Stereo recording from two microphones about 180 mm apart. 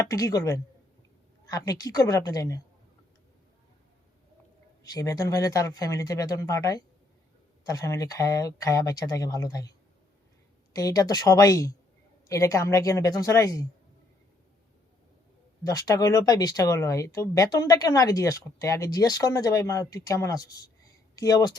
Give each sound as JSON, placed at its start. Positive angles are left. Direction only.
{"t": 0.0, "sound": "speech", "side_deg": 20}
{"t": 4.8, "sound": "speech", "side_deg": 20}
{"t": 15.6, "sound": "speech", "side_deg": 20}